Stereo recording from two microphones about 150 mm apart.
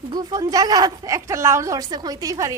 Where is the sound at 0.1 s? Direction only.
25° right (ahead or behind).